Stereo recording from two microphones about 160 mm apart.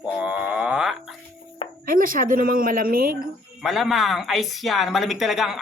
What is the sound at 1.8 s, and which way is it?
A woman's voice, 60° right (ahead or behind).